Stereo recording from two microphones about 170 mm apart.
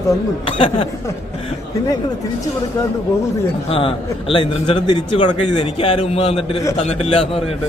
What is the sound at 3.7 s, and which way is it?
A man's voice, 30° left (ahead or behind).